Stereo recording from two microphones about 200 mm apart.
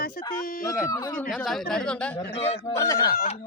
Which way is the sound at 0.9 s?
20° left (ahead or behind).